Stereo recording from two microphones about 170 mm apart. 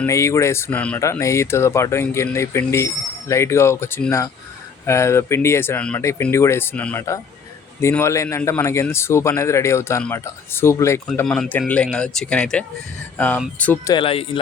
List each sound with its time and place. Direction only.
0.0 s speech: 15° left (ahead or behind)
11.0 s speech: 5° left (ahead or behind)
13.9 s speech: 30° left (ahead or behind)